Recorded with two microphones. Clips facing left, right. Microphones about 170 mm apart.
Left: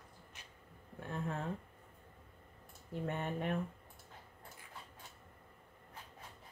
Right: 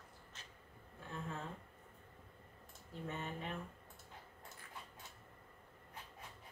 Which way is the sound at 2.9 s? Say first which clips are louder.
Left 6 dB; 60° left (ahead or behind).